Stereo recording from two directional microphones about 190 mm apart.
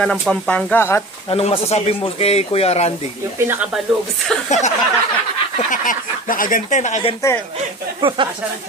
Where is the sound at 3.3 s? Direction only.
10° right (ahead or behind).